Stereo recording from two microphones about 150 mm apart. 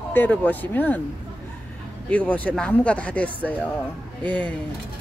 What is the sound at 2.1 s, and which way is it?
Speech, 10° left (ahead or behind).